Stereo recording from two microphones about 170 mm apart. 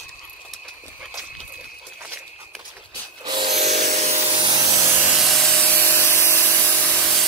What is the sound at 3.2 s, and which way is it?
Wood, 30° right (ahead or behind).